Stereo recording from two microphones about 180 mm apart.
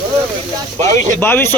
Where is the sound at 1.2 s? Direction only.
10° left (ahead or behind).